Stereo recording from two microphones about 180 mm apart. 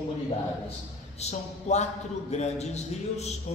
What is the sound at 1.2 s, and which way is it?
A man's voice, 40° left (ahead or behind).